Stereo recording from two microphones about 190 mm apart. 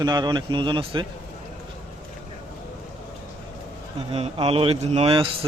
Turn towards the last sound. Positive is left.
turn(degrees=-30)  # may be behind; listen again after turning